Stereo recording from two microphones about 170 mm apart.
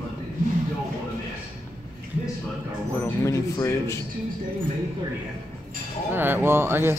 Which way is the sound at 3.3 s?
20° left (ahead or behind).